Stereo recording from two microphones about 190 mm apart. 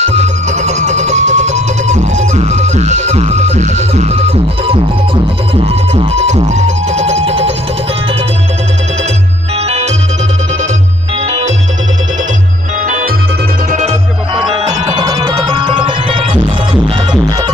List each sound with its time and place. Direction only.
0.0 s music: 35° right (ahead or behind)
11.2 s music: 35° right (ahead or behind)
12.8 s music: 40° right (ahead or behind); by 17.5 s 20° right (ahead or behind)